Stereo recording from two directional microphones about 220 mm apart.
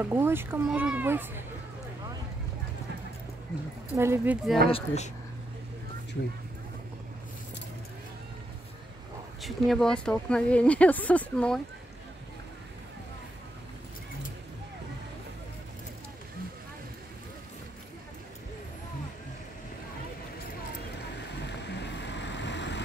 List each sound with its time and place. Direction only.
0.0 s a child's voice: 10° right (ahead or behind)
3.9 s a child's voice: 10° right (ahead or behind)
4.6 s speech: 30° left (ahead or behind)
9.4 s speech: centre (ahead or behind)
21.5 s vehicle: 50° left (ahead or behind)